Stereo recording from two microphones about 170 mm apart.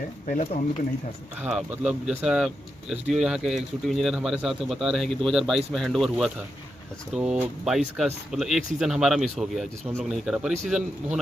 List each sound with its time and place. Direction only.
0.3 s speech: 50° left (ahead or behind)
1.4 s speech: 5° right (ahead or behind)